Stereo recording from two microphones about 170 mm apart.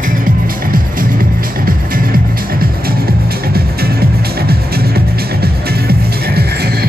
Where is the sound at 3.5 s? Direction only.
65° right (ahead or behind).